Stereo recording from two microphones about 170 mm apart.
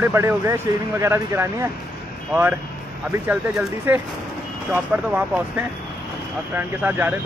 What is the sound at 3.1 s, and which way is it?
Speech, 15° right (ahead or behind).